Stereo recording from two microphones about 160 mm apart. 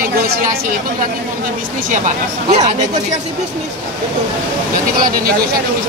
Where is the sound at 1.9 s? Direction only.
50° right (ahead or behind).